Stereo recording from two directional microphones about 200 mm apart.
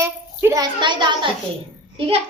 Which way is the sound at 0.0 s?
10° right (ahead or behind).